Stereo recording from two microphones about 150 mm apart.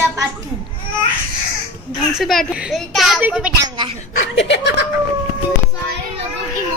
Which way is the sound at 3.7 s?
30° right (ahead or behind).